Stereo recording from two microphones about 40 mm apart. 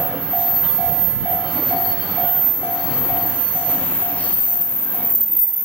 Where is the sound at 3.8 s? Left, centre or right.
Left.